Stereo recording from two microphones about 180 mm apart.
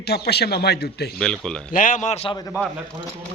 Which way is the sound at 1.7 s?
45° left (ahead or behind).